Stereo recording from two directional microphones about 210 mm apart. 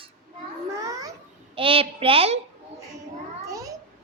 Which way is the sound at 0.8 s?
15° right (ahead or behind).